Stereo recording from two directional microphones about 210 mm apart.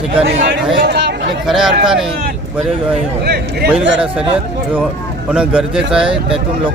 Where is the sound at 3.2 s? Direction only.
50° right (ahead or behind).